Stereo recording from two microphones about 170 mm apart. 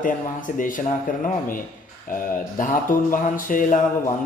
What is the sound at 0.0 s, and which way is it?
Speech, 50° left (ahead or behind).